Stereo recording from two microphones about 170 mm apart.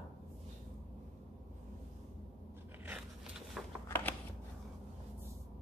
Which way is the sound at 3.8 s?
10° left (ahead or behind).